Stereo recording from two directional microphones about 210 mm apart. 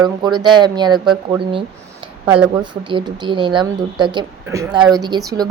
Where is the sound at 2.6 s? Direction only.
20° right (ahead or behind).